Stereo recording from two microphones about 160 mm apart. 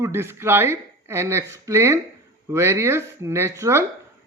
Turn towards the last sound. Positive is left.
turn(degrees=-15)  # may be behind; listen again after turning